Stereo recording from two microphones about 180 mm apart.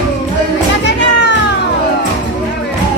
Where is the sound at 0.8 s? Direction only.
85° left.